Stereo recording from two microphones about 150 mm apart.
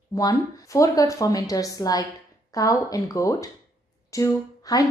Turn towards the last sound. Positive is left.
turn(degrees=25)  # may be behind; listen again after turning